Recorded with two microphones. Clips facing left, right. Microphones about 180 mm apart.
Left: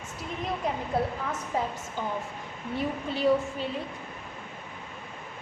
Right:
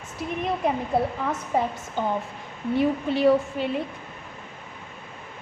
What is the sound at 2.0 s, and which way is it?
A woman's voice, 65° right (ahead or behind).